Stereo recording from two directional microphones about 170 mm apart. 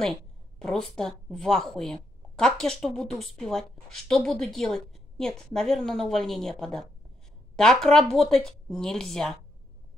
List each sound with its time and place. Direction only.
0.0 s speech: 5° left (ahead or behind)